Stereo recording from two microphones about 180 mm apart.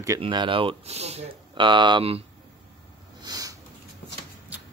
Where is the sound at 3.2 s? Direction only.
20° right (ahead or behind).